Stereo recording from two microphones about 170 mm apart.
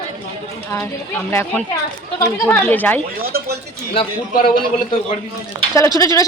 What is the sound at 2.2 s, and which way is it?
Speech, 15° left (ahead or behind).